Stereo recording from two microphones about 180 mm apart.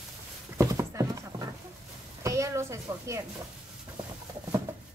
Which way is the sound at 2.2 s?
15° right (ahead or behind).